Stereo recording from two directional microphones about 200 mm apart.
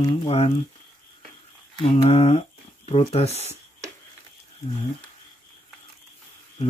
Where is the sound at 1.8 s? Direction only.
30° left (ahead or behind).